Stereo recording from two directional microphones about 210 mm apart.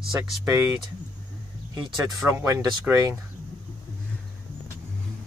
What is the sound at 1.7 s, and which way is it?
Speech, 15° right (ahead or behind).